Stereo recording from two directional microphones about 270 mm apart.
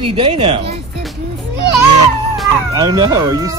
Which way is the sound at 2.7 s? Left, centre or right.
Centre.